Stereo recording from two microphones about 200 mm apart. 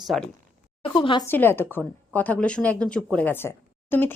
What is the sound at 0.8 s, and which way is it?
Speech, 25° left (ahead or behind).